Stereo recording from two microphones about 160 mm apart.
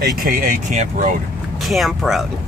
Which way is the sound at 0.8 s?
50° right (ahead or behind).